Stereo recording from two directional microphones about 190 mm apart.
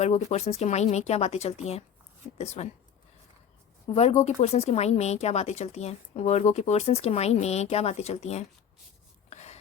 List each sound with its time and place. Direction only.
0.0 s speech: 35° left (ahead or behind)
3.8 s speech: 35° left (ahead or behind)
9.3 s a sound: 35° left (ahead or behind)